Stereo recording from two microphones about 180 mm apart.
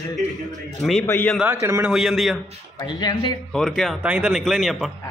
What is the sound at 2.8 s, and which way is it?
Speech, 20° left (ahead or behind).